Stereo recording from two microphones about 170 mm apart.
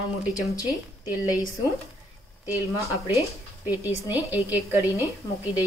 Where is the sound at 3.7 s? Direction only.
10° right (ahead or behind).